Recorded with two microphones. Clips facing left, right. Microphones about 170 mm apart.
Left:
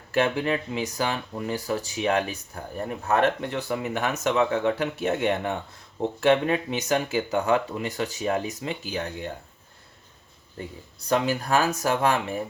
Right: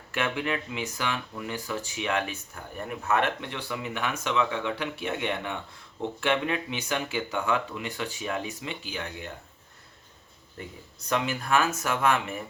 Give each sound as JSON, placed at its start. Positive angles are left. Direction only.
{"t": 0.1, "sound": "speech", "side_deg": 35}
{"t": 11.1, "sound": "speech", "side_deg": 35}